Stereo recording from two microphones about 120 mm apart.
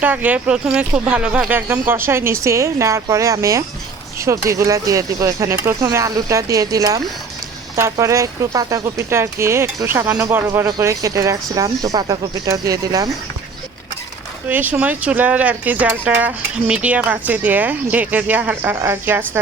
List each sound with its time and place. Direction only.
0.0 s speech: 15° right (ahead or behind); by 13.1 s 30° right (ahead or behind)
14.4 s speech: 15° right (ahead or behind)